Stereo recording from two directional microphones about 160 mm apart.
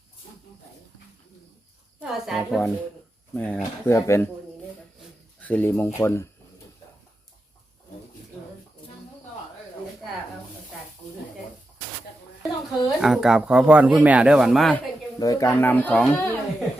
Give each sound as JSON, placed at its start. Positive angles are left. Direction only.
{"t": 2.0, "sound": "speech", "side_deg": -5}
{"t": 3.6, "sound": "speech", "side_deg": 20}
{"t": 5.4, "sound": "speech", "side_deg": 10}
{"t": 13.0, "sound": "speech", "side_deg": -5}
{"t": 15.2, "sound": "speech", "side_deg": 20}